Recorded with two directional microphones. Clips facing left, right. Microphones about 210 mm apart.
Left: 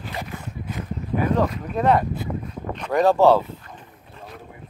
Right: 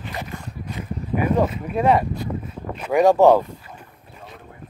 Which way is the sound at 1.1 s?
10° right (ahead or behind).